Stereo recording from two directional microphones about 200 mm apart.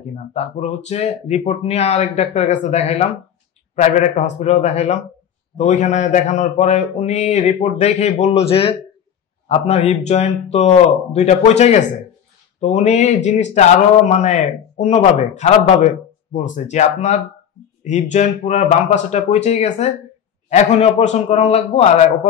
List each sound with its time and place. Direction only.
0.1 s speech: 35° left (ahead or behind)